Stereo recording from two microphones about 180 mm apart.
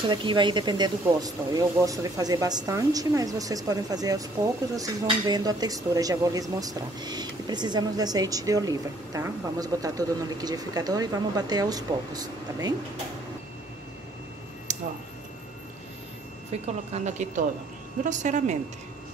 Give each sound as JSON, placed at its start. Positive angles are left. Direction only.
{"t": 0.1, "sound": "speech", "side_deg": -25}
{"t": 16.9, "sound": "a woman's voice", "side_deg": -40}